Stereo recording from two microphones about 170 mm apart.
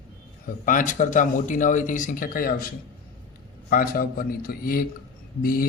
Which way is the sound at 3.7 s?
60° left (ahead or behind).